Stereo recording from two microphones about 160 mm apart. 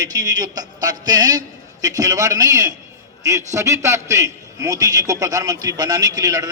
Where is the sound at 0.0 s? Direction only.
25° right (ahead or behind).